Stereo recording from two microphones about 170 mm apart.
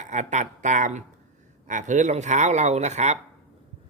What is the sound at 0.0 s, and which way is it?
Speech, 45° right (ahead or behind).